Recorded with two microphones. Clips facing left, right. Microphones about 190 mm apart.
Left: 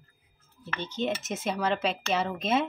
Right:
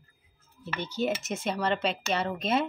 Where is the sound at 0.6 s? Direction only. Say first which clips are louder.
Right 1 dB; 10° right (ahead or behind).